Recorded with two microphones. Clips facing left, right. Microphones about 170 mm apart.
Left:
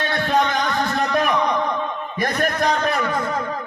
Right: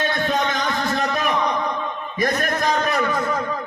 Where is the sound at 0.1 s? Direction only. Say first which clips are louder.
Left 2 dB; 60° left (ahead or behind).